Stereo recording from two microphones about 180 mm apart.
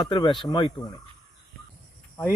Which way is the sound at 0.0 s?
25° left (ahead or behind).